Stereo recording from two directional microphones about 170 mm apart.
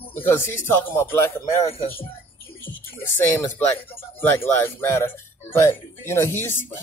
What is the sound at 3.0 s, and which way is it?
Speech, 15° left (ahead or behind).